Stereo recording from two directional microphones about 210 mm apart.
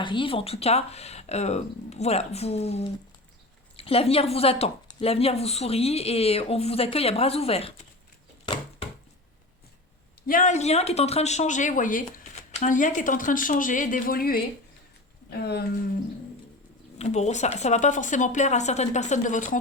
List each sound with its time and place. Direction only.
0.0 s speech: 25° left (ahead or behind)
10.2 s speech: 40° left (ahead or behind)
17.0 s speech: 30° left (ahead or behind)